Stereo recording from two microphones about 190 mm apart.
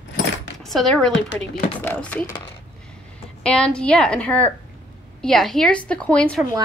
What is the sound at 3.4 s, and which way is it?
A woman's voice, 5° left (ahead or behind).